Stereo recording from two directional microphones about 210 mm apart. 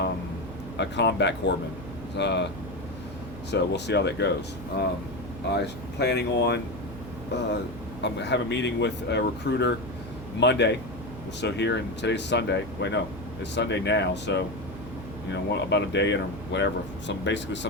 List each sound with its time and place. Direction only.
0.8 s speech: 55° left (ahead or behind)
3.5 s speech: 55° left (ahead or behind)
5.5 s speech: 55° left (ahead or behind)
8.0 s speech: 55° left (ahead or behind)